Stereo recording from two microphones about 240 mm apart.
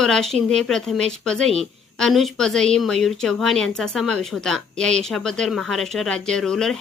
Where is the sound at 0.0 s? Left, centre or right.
Centre.